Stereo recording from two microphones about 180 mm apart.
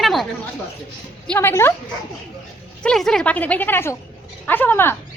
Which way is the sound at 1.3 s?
10° left (ahead or behind).